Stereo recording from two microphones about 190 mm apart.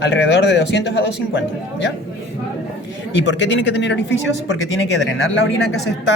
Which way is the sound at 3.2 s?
70° left (ahead or behind).